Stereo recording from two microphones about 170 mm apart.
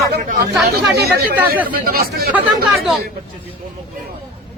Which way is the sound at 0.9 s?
70° right (ahead or behind).